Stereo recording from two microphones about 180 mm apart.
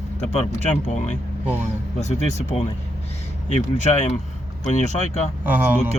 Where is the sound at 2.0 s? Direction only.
40° left (ahead or behind).